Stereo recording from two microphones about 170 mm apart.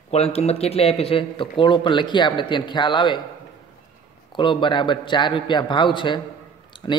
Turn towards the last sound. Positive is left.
turn(degrees=30)  # may be behind; listen again after turning